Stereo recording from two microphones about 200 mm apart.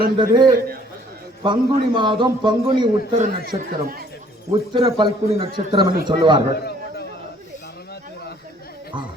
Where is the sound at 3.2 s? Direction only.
45° right (ahead or behind).